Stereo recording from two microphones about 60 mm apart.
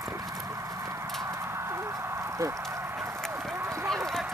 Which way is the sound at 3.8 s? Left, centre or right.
Centre.